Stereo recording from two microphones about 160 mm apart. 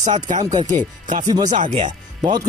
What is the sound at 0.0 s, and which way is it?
Speech, 50° right (ahead or behind).